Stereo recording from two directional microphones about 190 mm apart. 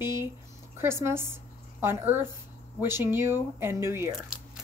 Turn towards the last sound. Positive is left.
turn(degrees=-15)  # may be behind; listen again after turning